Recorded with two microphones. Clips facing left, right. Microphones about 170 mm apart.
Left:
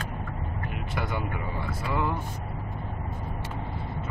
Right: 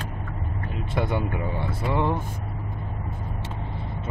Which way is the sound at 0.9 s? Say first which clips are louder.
Right 6 dB; 25° right (ahead or behind).